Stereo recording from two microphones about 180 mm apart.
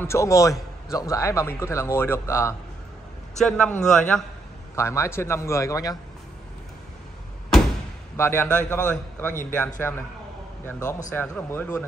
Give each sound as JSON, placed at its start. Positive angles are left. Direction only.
{"t": 0.0, "sound": "a man's voice", "side_deg": 15}
{"t": 3.3, "sound": "a man's voice", "side_deg": 5}
{"t": 8.2, "sound": "a man's voice", "side_deg": 15}